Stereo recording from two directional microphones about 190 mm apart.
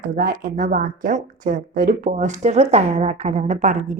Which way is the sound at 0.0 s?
45° right (ahead or behind).